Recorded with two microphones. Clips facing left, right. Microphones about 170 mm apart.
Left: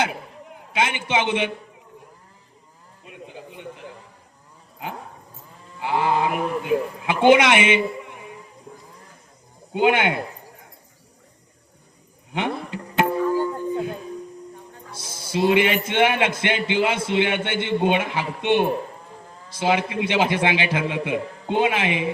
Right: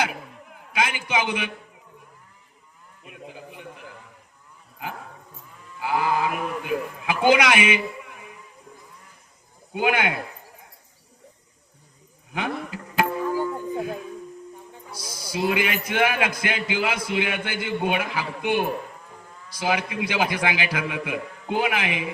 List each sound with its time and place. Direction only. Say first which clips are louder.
0.7 s a man's voice: left 2 dB; 25° left (ahead or behind)
3.0 s a sound: left 1 dB; 25° left (ahead or behind)
5.5 s speech: left 1 dB; 30° left (ahead or behind)
8.7 s a sound: left 5 dB; 30° left (ahead or behind)
9.7 s a man's voice: left 4 dB; 25° left (ahead or behind)
12.3 s music: left 3 dB; 25° left (ahead or behind)
14.9 s a man's voice: left 4 dB; 25° left (ahead or behind)